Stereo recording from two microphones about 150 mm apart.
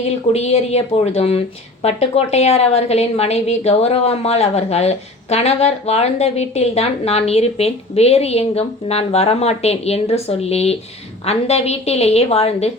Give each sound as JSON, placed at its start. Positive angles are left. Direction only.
{"t": 0.3, "sound": "a woman's voice", "side_deg": 45}